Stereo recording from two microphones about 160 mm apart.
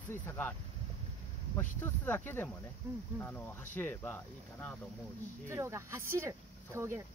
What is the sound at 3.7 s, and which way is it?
Speech, 10° left (ahead or behind).